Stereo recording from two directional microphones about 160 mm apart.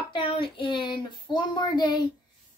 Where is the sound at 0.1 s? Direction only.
30° left (ahead or behind).